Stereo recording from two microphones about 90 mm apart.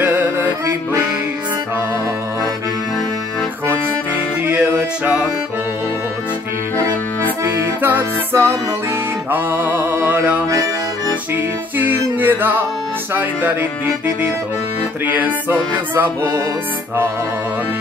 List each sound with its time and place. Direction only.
0.0 s music: 20° right (ahead or behind)
4.5 s music: 20° right (ahead or behind)
7.8 s music: 25° right (ahead or behind)
11.8 s music: 20° right (ahead or behind)